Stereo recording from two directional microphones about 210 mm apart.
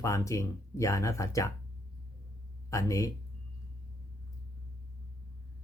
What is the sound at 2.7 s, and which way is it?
Speech, 15° left (ahead or behind).